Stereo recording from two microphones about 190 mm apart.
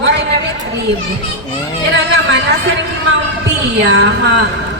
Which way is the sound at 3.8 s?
65° right (ahead or behind).